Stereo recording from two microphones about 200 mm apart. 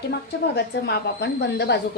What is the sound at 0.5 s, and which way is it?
A woman's voice, 55° left (ahead or behind).